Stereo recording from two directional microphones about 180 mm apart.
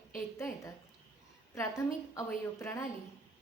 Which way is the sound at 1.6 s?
15° left (ahead or behind).